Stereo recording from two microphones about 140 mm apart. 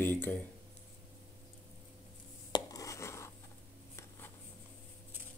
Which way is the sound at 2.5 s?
25° left (ahead or behind).